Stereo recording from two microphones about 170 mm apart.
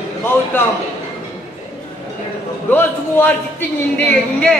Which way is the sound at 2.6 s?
10° left (ahead or behind).